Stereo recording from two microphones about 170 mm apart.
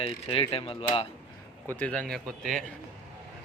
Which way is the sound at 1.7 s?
10° left (ahead or behind).